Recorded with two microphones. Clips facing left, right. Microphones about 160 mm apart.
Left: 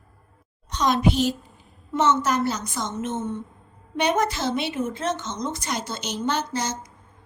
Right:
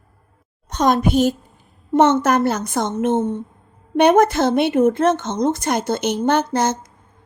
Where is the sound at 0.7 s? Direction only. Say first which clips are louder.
Right 5 dB; 50° right (ahead or behind).